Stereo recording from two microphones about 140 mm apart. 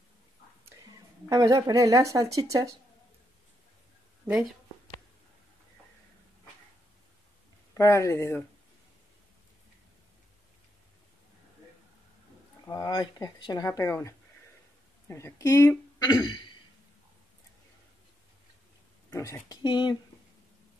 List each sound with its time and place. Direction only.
1.3 s speech: 25° right (ahead or behind)
4.2 s speech: 25° right (ahead or behind)
7.7 s speech: 20° left (ahead or behind)
12.6 s speech: 25° left (ahead or behind)
19.0 s speech: 20° left (ahead or behind)